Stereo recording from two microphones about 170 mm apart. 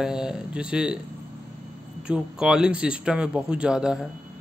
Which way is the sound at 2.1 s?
5° right (ahead or behind).